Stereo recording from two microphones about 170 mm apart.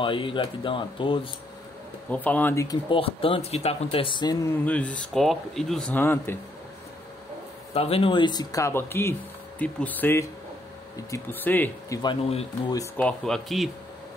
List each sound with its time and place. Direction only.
0.0 s speech: 30° left (ahead or behind)
2.0 s speech: 10° left (ahead or behind)
2.9 s speech: 35° left (ahead or behind)
4.6 s speech: 5° left (ahead or behind)
7.7 s speech: 35° left (ahead or behind); by 12.0 s 10° left (ahead or behind)
12.0 s speech: 30° left (ahead or behind)
12.9 s speech: 5° left (ahead or behind)